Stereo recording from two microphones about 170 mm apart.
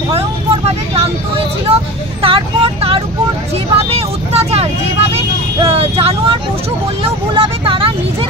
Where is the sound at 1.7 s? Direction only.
35° right (ahead or behind).